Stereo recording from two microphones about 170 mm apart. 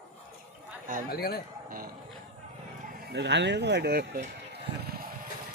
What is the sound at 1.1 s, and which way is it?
Speech, 65° left (ahead or behind).